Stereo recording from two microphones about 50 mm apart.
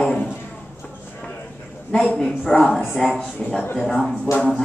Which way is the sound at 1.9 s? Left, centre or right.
Left.